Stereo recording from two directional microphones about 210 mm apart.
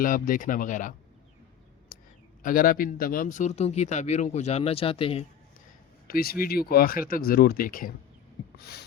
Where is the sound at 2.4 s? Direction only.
40° left (ahead or behind).